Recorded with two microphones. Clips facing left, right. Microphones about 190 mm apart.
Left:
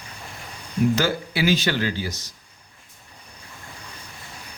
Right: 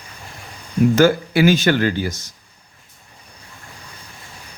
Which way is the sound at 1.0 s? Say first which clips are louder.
Right 9 dB; 50° right (ahead or behind).